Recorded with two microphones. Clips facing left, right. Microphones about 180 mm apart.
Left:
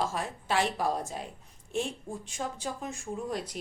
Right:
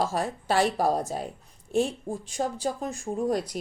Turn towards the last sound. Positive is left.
turn(degrees=-40)  # may be behind; listen again after turning